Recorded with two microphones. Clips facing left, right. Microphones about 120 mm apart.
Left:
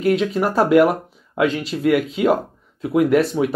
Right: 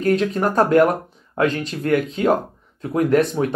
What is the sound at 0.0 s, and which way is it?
Speech, 5° left (ahead or behind).